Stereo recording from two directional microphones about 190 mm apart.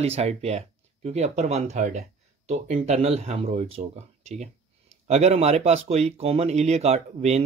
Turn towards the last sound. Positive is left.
turn(degrees=-35)  # may be behind; listen again after turning